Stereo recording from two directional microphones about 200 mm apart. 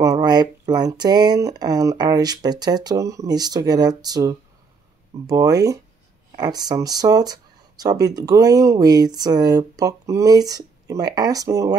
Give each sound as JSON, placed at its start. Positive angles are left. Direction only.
{"t": 0.0, "sound": "speech", "side_deg": -20}